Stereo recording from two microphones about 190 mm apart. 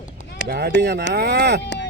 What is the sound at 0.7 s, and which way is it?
Speech, 60° right (ahead or behind).